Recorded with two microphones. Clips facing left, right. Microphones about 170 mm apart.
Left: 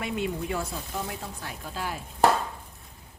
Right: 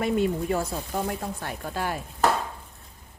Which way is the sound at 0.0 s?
40° right (ahead or behind).